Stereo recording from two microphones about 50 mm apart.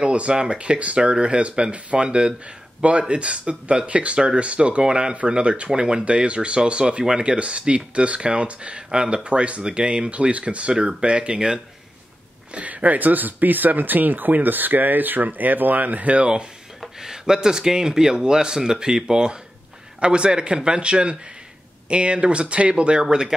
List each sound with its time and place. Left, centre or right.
0.0 s speech: right
12.5 s speech: right
17.0 s speech: centre